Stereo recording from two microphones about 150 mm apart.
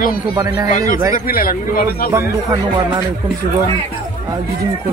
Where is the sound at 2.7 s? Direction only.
30° right (ahead or behind).